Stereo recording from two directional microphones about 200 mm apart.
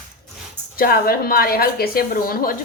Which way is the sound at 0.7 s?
45° left (ahead or behind).